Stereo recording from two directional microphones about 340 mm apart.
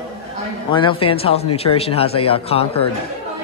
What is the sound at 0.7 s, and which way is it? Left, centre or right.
A man's voice, centre.